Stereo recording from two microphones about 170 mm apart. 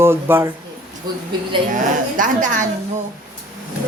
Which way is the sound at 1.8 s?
50° right (ahead or behind).